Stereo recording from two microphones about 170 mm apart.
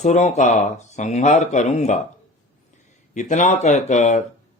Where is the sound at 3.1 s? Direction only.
45° left (ahead or behind).